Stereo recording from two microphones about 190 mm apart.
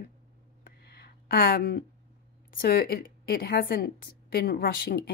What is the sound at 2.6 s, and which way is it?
A woman's voice, 55° left (ahead or behind).